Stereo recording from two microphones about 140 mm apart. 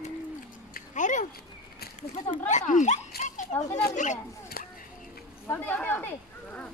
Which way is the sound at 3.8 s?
75° left (ahead or behind).